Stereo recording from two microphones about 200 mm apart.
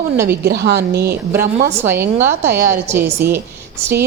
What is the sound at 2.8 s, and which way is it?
Speech, 10° right (ahead or behind).